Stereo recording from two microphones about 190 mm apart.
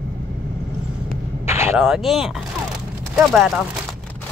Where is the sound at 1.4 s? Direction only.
15° right (ahead or behind).